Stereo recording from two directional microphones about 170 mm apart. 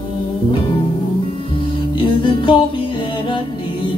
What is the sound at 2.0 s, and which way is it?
Music, 30° left (ahead or behind).